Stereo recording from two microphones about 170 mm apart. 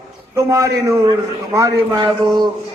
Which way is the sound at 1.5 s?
20° right (ahead or behind).